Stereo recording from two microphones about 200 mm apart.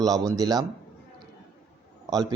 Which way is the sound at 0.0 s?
20° right (ahead or behind).